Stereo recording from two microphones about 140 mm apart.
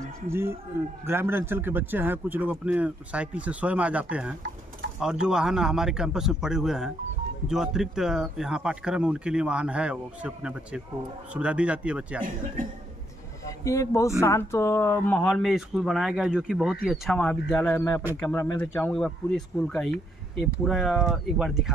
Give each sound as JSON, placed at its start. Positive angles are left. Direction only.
{"t": 0.3, "sound": "a man's voice", "side_deg": -15}
{"t": 13.5, "sound": "speech", "side_deg": 25}
{"t": 15.5, "sound": "speech", "side_deg": -5}